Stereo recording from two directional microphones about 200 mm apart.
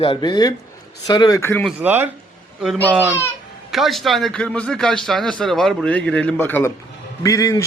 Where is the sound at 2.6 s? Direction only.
5° left (ahead or behind).